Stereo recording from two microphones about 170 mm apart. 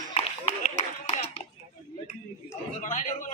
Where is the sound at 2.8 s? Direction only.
45° left (ahead or behind).